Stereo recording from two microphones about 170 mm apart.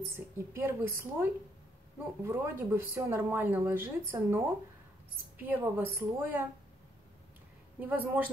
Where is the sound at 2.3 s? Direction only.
15° right (ahead or behind).